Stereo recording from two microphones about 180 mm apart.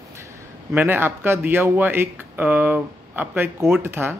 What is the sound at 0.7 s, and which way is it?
Speech, 10° right (ahead or behind).